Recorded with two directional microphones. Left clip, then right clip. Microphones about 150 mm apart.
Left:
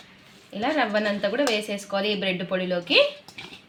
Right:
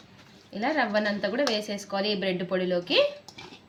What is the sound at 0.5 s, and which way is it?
A woman's voice, 25° left (ahead or behind).